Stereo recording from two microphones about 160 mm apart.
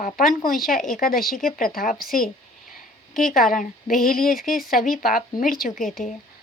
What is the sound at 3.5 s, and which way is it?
Speech, 55° left (ahead or behind).